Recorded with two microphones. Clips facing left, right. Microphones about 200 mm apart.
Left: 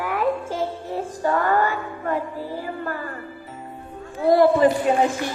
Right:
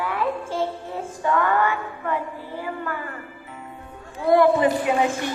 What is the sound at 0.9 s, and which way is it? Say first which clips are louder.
Music: left 1 dB; 35° left (ahead or behind).